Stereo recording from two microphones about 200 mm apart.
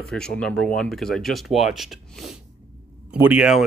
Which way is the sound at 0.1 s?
5° left (ahead or behind).